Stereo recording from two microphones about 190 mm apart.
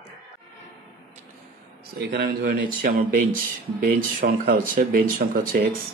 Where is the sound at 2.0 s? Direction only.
60° right (ahead or behind).